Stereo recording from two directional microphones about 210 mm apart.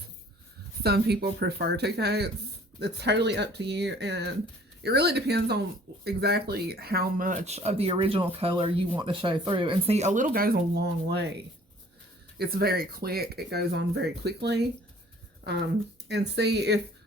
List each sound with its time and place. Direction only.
0.8 s speech: 50° right (ahead or behind)
12.4 s speech: 45° right (ahead or behind)
16.0 s speech: 55° right (ahead or behind)